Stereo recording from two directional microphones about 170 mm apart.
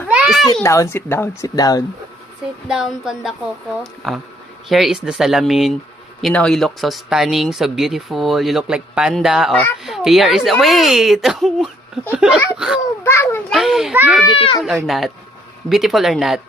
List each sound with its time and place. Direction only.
0.1 s a sound: 5° right (ahead or behind)
0.4 s a child's voice: 20° left (ahead or behind)
2.6 s speech: 5° right (ahead or behind)
13.0 s a child's voice: 15° left (ahead or behind)
13.5 s speech: centre (ahead or behind)
14.3 s speech: 35° left (ahead or behind)
14.8 s speech: centre (ahead or behind)